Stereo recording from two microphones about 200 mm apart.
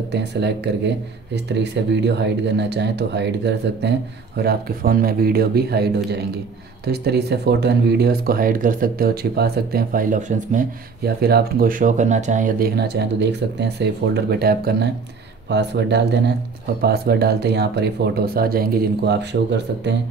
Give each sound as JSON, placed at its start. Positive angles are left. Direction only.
{"t": 0.1, "sound": "speech", "side_deg": -55}
{"t": 11.1, "sound": "speech", "side_deg": -50}